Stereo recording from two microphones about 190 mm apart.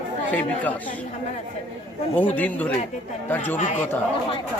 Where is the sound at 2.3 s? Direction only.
10° left (ahead or behind).